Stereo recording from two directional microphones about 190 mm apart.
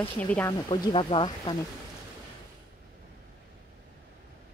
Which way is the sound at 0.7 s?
25° left (ahead or behind).